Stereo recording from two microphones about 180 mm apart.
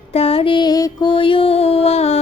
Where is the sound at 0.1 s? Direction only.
35° left (ahead or behind).